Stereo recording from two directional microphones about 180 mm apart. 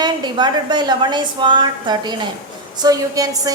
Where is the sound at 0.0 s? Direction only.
25° right (ahead or behind).